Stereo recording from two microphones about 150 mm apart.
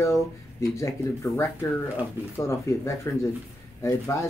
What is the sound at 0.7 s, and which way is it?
Speech, 20° left (ahead or behind).